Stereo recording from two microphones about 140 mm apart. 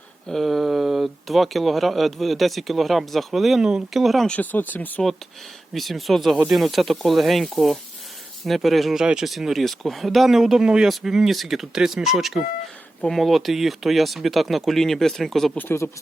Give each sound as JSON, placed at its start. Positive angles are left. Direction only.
{"t": 0.3, "sound": "speech", "side_deg": 0}
{"t": 5.7, "sound": "speech", "side_deg": 0}
{"t": 15.5, "sound": "speech", "side_deg": 15}